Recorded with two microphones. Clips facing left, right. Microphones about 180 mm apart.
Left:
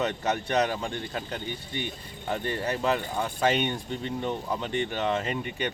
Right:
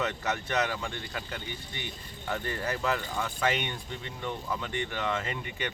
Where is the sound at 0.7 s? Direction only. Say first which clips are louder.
Left 4 dB; 30° left (ahead or behind).